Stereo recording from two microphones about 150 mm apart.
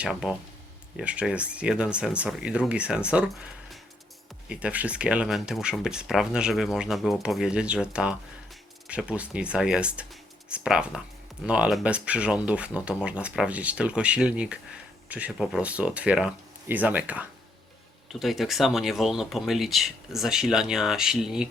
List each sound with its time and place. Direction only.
0.0 s speech: 5° right (ahead or behind)